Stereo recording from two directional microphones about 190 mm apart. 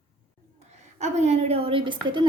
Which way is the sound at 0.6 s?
35° right (ahead or behind).